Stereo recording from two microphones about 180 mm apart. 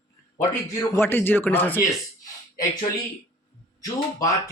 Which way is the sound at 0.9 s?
10° left (ahead or behind).